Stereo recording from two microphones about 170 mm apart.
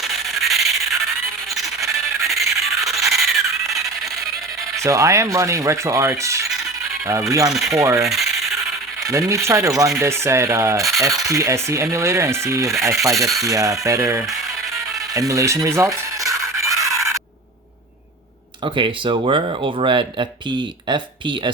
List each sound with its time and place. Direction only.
0.0 s music: centre (ahead or behind)
1.5 s a sound: centre (ahead or behind)
2.6 s music: centre (ahead or behind)
3.7 s a sound: centre (ahead or behind)
4.8 s speech: 20° right (ahead or behind)
8.0 s rub: centre (ahead or behind)
9.0 s speech: 20° right (ahead or behind)
13.1 s speech: centre (ahead or behind)
13.4 s speech: 20° right (ahead or behind)
16.2 s music: 20° right (ahead or behind)
18.6 s speech: 30° right (ahead or behind)